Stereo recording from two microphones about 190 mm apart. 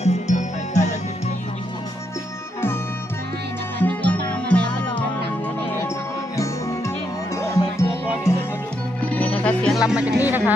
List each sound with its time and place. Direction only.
0.0 s music: 35° left (ahead or behind)
3.8 s music: 10° left (ahead or behind)
6.3 s music: 15° left (ahead or behind); by 10.1 s 5° right (ahead or behind)
10.2 s speech: 10° right (ahead or behind)